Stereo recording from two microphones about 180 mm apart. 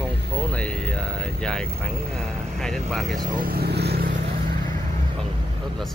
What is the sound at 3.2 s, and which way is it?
Vehicle, 50° right (ahead or behind).